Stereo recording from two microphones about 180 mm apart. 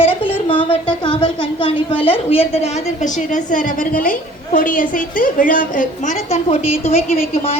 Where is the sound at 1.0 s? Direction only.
25° left (ahead or behind).